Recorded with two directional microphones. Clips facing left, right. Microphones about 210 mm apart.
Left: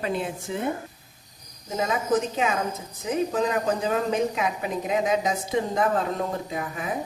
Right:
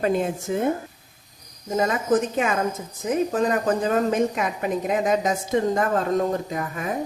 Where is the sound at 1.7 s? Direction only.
50° right (ahead or behind).